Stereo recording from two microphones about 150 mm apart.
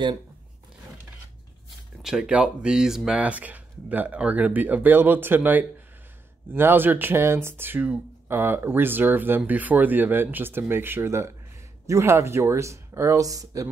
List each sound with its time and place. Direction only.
2.0 s speech: 5° right (ahead or behind); by 13.7 s 20° right (ahead or behind)